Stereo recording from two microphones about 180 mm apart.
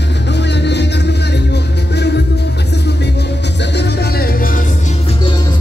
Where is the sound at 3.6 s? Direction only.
70° left (ahead or behind); by 4.6 s 55° left (ahead or behind).